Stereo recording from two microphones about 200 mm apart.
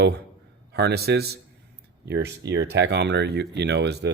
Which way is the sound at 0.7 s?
55° right (ahead or behind).